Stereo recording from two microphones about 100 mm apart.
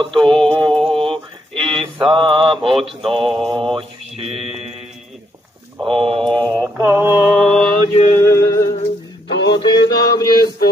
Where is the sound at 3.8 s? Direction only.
70° right (ahead or behind).